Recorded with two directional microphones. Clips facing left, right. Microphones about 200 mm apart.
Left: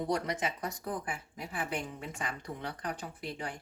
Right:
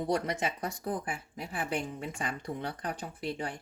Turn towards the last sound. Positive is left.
turn(degrees=-30)  # may be behind; listen again after turning